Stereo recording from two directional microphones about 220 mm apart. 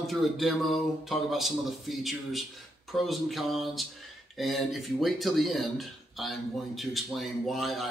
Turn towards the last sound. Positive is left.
turn(degrees=0)  # may be behind; listen again after turning